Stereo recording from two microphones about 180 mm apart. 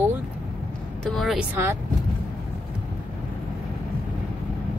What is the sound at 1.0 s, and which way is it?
Speech, centre (ahead or behind).